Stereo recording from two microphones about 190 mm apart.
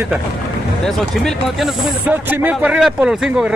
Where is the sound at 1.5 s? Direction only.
10° right (ahead or behind).